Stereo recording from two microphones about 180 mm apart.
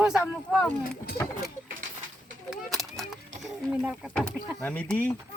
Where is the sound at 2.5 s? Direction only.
Centre (ahead or behind).